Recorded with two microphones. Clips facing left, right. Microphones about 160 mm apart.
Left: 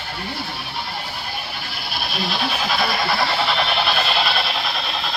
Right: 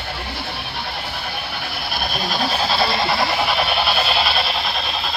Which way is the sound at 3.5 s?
5° right (ahead or behind).